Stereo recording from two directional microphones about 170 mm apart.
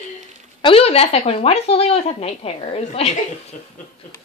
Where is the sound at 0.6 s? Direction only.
35° left (ahead or behind).